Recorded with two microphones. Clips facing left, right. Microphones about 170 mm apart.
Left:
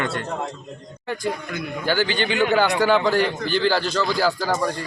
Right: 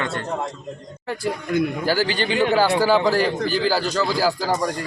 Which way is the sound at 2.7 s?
5° right (ahead or behind).